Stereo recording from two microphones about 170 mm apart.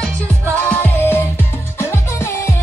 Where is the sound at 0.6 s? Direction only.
10° left (ahead or behind).